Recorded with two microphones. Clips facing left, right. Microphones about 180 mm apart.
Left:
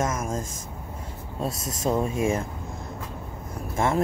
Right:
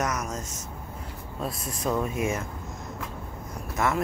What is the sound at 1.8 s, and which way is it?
Speech, 25° left (ahead or behind).